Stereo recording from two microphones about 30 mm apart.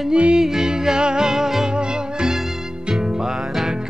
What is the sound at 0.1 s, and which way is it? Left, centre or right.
Music, right.